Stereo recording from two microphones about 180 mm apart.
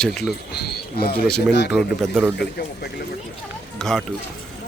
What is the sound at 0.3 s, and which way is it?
Speech, 65° left (ahead or behind).